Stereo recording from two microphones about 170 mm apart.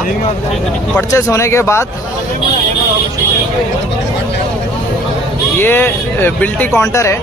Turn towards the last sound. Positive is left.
turn(degrees=15)  # may be behind; listen again after turning